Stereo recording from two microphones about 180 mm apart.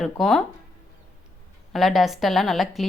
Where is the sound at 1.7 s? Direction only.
Centre (ahead or behind).